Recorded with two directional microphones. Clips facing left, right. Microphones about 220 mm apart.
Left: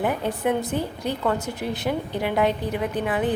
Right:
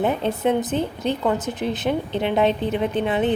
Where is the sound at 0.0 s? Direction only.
25° right (ahead or behind).